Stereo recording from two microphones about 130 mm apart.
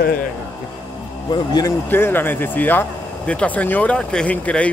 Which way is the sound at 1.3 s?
30° left (ahead or behind).